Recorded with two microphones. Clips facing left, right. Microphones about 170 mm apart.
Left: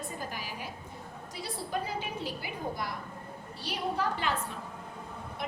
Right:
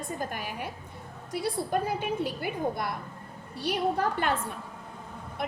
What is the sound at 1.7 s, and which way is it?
A woman's voice, 55° right (ahead or behind).